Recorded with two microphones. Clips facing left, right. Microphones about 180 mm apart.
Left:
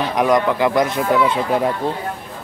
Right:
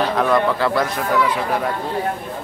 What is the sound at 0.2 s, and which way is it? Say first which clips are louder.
Speech: left 4 dB; 15° left (ahead or behind).